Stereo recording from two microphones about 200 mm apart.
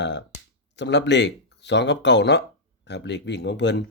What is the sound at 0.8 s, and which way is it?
Speech, 60° left (ahead or behind).